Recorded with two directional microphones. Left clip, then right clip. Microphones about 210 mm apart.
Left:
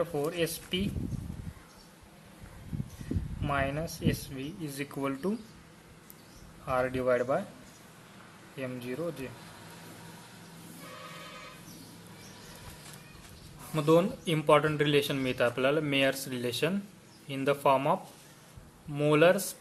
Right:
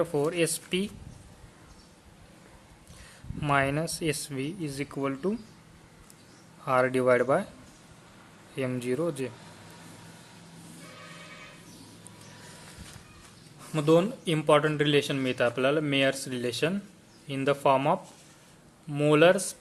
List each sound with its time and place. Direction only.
0.0 s speech: 30° right (ahead or behind)
3.4 s speech: 30° right (ahead or behind); by 5.3 s 10° right (ahead or behind)
6.7 s speech: 30° right (ahead or behind)
8.5 s speech: 30° right (ahead or behind)
13.7 s speech: 15° right (ahead or behind)